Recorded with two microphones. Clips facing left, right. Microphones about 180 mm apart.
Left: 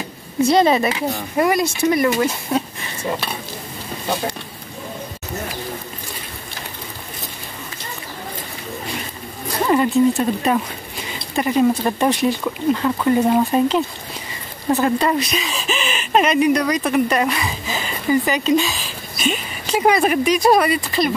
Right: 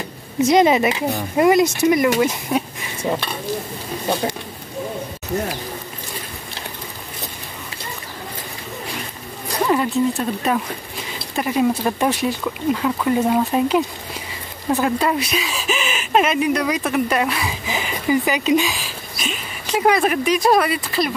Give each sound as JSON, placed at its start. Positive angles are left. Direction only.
{"t": 0.4, "sound": "speech", "side_deg": -15}
{"t": 9.7, "sound": "speech", "side_deg": 0}
{"t": 17.6, "sound": "speech", "side_deg": -15}